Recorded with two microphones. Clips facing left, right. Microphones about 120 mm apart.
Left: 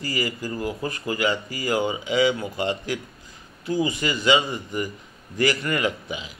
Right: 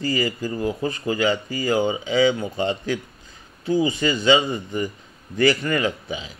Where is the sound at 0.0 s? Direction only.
25° right (ahead or behind).